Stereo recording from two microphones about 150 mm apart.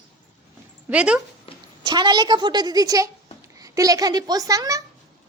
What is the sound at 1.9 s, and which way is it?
A child's voice, 30° right (ahead or behind).